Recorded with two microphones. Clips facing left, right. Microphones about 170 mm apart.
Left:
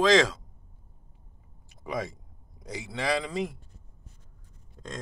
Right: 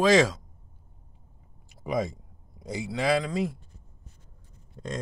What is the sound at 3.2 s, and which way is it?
Speech, centre (ahead or behind).